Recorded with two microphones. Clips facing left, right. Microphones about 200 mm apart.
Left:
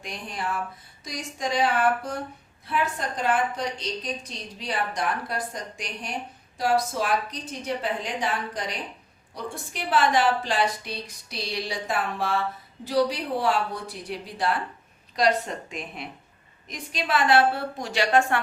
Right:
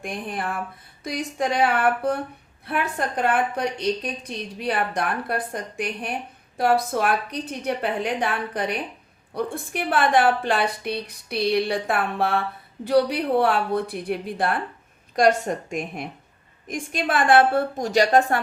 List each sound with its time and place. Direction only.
0.0 s a woman's voice: 55° right (ahead or behind); by 18.4 s 40° right (ahead or behind)